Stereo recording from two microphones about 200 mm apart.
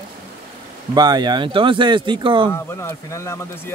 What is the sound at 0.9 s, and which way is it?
Speech, 20° right (ahead or behind).